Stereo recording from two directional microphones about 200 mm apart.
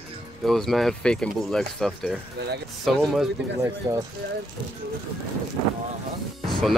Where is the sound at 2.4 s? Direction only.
55° right (ahead or behind).